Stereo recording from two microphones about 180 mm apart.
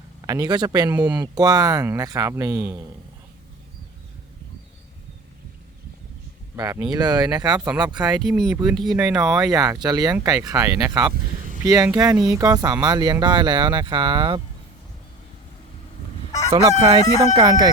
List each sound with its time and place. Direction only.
0.3 s speech: 20° right (ahead or behind)
6.6 s speech: 20° right (ahead or behind)
8.1 s speech: centre (ahead or behind)
9.4 s speech: 20° right (ahead or behind)
16.6 s crowing: 30° right (ahead or behind)
17.0 s speech: 20° left (ahead or behind)
17.3 s speech: 25° right (ahead or behind)